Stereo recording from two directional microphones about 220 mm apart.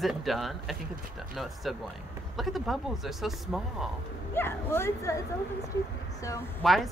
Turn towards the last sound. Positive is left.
turn(degrees=0)  # may be behind; listen again after turning